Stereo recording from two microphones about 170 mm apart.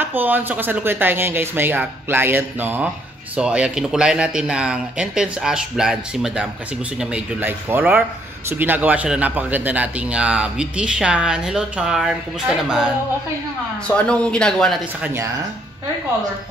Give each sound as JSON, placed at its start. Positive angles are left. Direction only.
{"t": 0.0, "sound": "a man's voice", "side_deg": -10}
{"t": 13.8, "sound": "speech", "side_deg": 5}